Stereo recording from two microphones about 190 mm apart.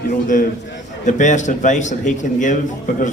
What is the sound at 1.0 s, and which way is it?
A man's voice, 40° left (ahead or behind).